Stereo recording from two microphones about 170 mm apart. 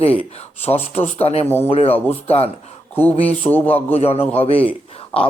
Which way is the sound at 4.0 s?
35° left (ahead or behind).